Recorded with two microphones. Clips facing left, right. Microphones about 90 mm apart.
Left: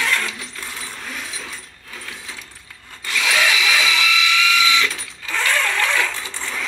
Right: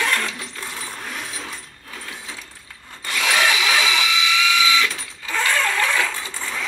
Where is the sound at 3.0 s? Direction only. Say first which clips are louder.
Even; 35° right (ahead or behind).